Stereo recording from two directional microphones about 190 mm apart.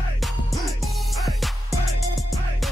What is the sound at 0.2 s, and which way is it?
Music, centre (ahead or behind).